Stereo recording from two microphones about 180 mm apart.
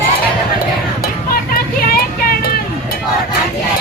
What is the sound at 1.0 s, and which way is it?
Music, 55° left (ahead or behind).